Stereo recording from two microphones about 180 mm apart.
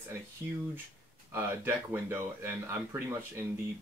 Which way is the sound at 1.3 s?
10° right (ahead or behind).